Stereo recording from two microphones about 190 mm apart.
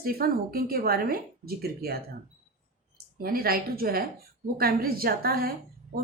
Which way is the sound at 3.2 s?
50° right (ahead or behind).